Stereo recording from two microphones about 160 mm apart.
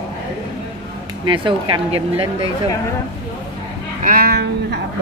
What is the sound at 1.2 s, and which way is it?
Speech, 30° right (ahead or behind).